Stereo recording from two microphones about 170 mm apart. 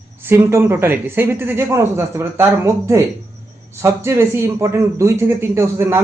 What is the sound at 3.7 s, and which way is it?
Speech, 15° right (ahead or behind).